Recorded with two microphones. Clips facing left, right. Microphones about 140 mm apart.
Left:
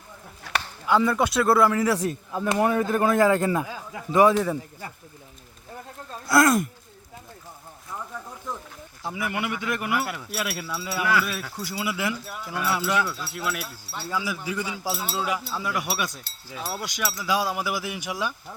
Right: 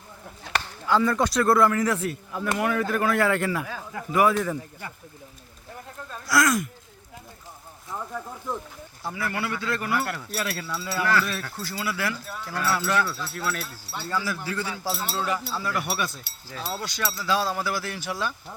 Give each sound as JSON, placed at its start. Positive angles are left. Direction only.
{"t": 0.9, "sound": "speech", "side_deg": 10}
{"t": 2.0, "sound": "speech", "side_deg": 30}
{"t": 6.2, "sound": "speech", "side_deg": 30}
{"t": 9.0, "sound": "speech", "side_deg": 15}
{"t": 13.9, "sound": "speech", "side_deg": 0}
{"t": 14.4, "sound": "speech", "side_deg": 15}